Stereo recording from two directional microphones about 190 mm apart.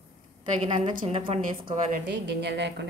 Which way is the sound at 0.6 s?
25° right (ahead or behind).